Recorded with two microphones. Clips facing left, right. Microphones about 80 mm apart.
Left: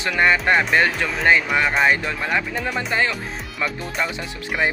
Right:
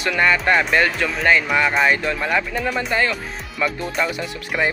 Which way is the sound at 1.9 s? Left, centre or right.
Left.